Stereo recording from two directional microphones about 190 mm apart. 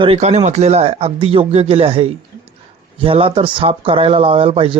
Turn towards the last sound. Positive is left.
turn(degrees=-30)  # may be behind; listen again after turning